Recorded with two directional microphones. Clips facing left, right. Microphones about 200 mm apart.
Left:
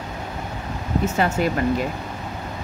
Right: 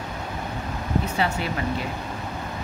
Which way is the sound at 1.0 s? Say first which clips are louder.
Left 4 dB; 45° left (ahead or behind).